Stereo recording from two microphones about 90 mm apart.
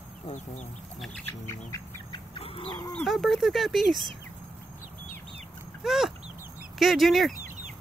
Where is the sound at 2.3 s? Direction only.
85° left.